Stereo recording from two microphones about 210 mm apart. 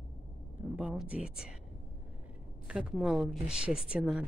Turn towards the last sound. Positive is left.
turn(degrees=-5)  # may be behind; listen again after turning